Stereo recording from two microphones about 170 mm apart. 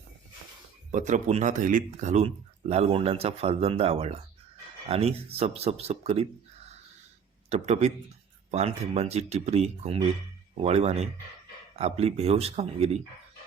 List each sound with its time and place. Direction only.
0.9 s speech: 45° right (ahead or behind)
7.5 s speech: 40° right (ahead or behind)